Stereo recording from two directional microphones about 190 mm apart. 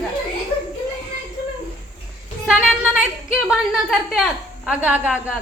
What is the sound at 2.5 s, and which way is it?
A woman's voice, 5° right (ahead or behind).